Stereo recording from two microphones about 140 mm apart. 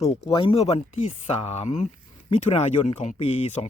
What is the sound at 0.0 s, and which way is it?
Speech, 50° left (ahead or behind).